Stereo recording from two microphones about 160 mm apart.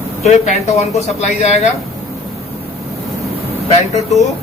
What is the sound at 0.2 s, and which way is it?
Speech, 45° left (ahead or behind).